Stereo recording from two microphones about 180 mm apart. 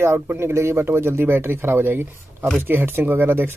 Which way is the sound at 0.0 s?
15° right (ahead or behind).